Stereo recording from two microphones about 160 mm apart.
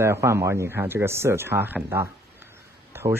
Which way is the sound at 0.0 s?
15° right (ahead or behind).